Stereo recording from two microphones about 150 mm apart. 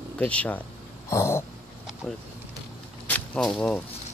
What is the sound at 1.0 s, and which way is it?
Throat clearing, 20° left (ahead or behind).